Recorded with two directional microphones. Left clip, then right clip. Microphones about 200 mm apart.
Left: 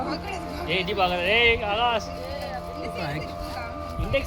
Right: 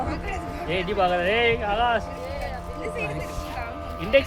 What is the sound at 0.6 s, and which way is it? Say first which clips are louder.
Speech: right 1 dB; 40° right (ahead or behind).